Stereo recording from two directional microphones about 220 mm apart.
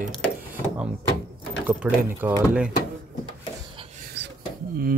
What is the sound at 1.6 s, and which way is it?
Speech, 5° right (ahead or behind).